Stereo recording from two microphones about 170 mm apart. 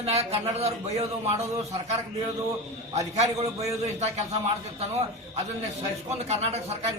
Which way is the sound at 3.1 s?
40° right (ahead or behind).